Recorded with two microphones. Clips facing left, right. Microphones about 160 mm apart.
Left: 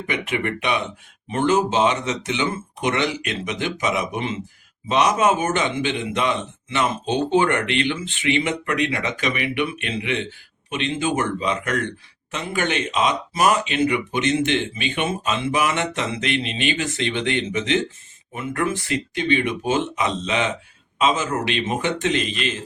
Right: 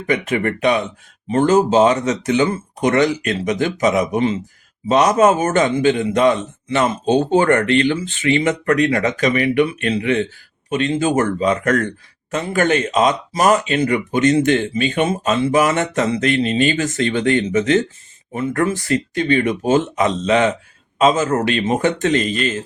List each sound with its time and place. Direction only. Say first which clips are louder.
0.1 s speech: right 7 dB; 40° right (ahead or behind)